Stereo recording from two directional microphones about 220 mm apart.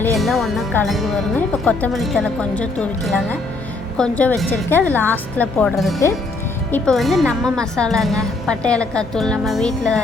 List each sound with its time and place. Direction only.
0.2 s a woman's voice: centre (ahead or behind)